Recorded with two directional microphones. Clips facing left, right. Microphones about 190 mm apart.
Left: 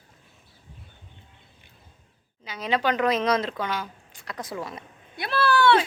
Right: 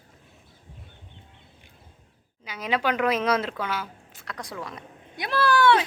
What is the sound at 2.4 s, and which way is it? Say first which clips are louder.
Speech: left 1 dB; 10° right (ahead or behind).